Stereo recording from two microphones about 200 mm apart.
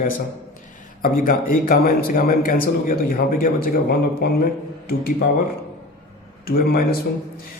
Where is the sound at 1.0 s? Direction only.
45° left (ahead or behind).